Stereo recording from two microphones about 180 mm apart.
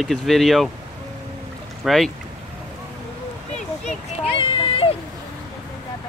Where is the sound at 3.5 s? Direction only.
35° left (ahead or behind).